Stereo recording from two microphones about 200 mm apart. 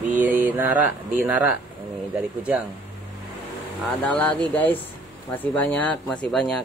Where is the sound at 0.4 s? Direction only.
10° right (ahead or behind).